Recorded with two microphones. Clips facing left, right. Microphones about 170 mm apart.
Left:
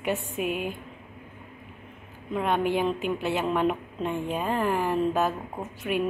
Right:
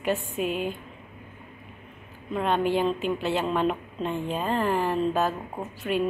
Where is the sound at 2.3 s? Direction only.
15° left (ahead or behind).